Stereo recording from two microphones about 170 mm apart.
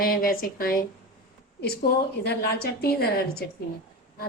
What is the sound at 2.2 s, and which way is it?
A woman's voice, 70° left (ahead or behind).